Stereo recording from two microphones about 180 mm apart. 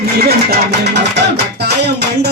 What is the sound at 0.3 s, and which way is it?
Speech, 65° right (ahead or behind).